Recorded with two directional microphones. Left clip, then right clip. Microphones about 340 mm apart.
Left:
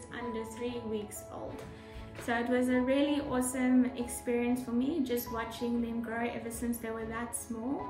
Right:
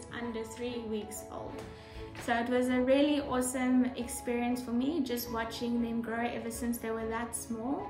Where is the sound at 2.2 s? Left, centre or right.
Centre.